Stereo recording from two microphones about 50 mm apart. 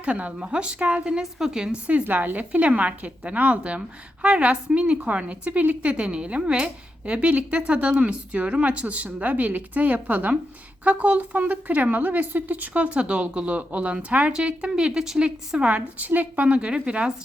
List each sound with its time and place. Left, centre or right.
0.0 s a woman's voice: right
2.0 s a woman's voice: right; by 15.3 s centre
15.5 s speech: right
16.5 s a woman's voice: right